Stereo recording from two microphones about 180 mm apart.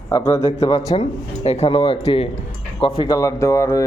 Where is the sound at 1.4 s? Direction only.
35° left (ahead or behind).